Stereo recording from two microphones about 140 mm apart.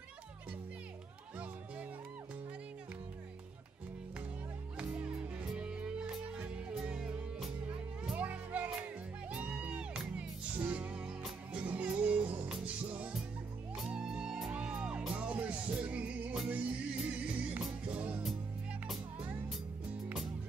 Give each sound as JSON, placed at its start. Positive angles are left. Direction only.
{"t": 4.7, "sound": "music", "side_deg": -10}